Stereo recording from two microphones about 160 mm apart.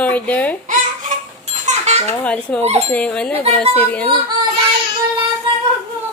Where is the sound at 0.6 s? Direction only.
55° right (ahead or behind).